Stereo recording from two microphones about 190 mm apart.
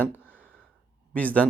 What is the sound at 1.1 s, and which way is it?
Speech, 5° left (ahead or behind).